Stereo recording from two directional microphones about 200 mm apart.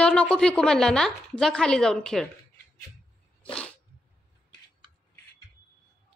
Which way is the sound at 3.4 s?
5° left (ahead or behind).